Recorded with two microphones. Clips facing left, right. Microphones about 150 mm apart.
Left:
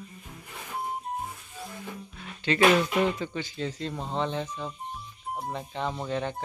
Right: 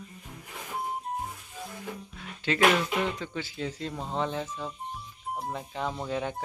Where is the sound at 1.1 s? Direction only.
Centre (ahead or behind).